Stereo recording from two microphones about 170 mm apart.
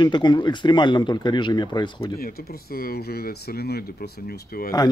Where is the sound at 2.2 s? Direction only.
65° left (ahead or behind).